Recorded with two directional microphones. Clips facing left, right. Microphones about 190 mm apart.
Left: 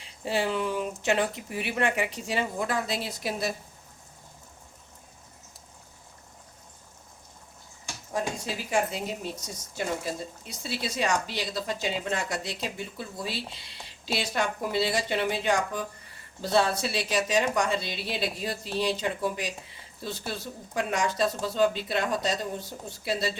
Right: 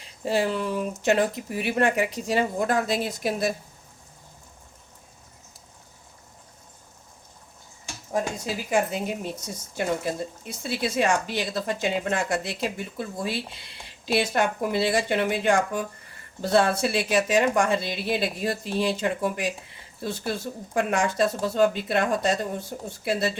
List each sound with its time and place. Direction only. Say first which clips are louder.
0.0 s speech: right 4 dB; 40° right (ahead or behind)
8.7 s a woman's voice: right 3 dB; 50° right (ahead or behind)